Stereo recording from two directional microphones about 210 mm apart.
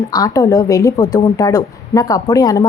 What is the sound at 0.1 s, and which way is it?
A woman's voice, 15° left (ahead or behind).